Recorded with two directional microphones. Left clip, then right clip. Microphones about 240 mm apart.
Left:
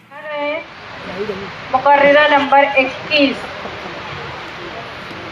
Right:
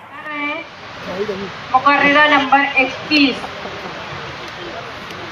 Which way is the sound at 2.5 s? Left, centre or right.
Left.